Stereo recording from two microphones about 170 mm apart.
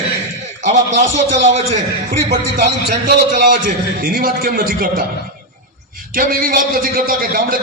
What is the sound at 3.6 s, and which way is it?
A man's voice, 60° right (ahead or behind).